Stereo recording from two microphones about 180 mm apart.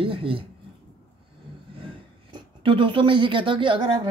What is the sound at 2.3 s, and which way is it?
A woman's voice, 25° right (ahead or behind).